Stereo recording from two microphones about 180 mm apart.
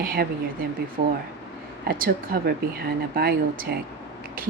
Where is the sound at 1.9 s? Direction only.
50° right (ahead or behind).